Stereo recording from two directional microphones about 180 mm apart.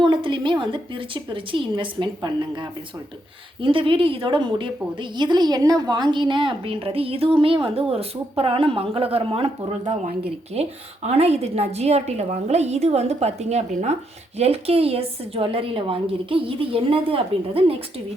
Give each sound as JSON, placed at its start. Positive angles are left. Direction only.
{"t": 0.0, "sound": "a woman's voice", "side_deg": -25}